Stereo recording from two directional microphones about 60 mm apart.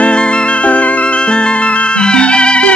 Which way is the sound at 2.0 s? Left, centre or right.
Centre.